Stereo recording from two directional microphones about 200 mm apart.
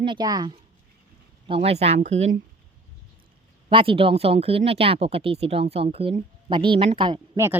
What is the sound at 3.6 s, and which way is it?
Speech, 25° right (ahead or behind).